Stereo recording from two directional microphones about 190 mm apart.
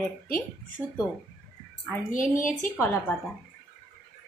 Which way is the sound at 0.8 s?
10° right (ahead or behind).